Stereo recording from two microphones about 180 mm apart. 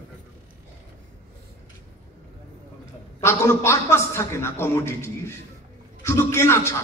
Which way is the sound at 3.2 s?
15° left (ahead or behind).